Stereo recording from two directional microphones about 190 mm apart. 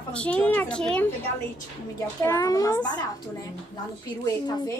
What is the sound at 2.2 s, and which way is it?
Speech, 15° left (ahead or behind).